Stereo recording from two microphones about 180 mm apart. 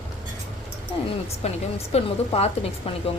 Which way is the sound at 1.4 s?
35° left (ahead or behind).